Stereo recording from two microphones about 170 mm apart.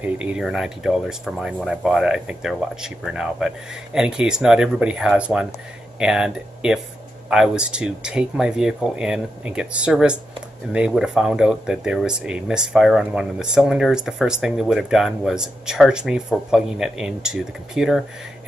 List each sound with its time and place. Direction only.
0.0 s speech: 10° right (ahead or behind)